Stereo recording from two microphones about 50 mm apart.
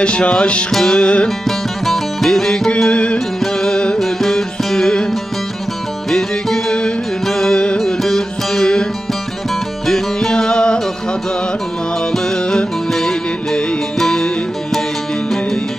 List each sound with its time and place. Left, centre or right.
0.0 s music: left
1.9 s music: centre
2.7 s music: left
6.0 s music: centre
9.8 s music: centre
12.1 s music: centre